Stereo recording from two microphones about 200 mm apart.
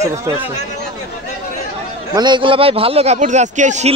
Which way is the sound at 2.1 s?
20° right (ahead or behind).